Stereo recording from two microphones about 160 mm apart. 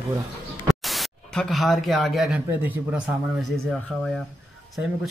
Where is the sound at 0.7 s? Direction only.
Centre (ahead or behind).